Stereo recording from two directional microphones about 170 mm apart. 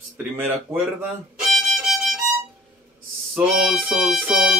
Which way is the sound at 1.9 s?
Centre (ahead or behind).